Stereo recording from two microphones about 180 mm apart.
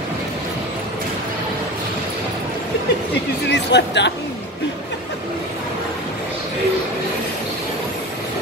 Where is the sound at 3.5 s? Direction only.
70° left (ahead or behind).